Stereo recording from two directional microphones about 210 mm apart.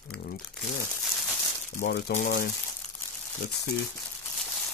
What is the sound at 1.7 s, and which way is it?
Speech, 45° left (ahead or behind).